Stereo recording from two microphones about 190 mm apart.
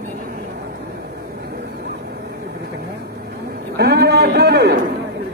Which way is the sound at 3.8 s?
60° right (ahead or behind).